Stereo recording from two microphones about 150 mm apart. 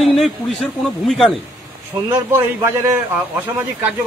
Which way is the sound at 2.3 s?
15° right (ahead or behind).